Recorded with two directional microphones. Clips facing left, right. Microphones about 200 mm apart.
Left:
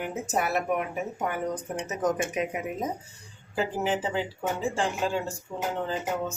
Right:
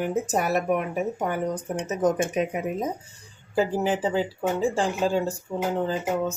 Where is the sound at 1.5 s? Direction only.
30° right (ahead or behind).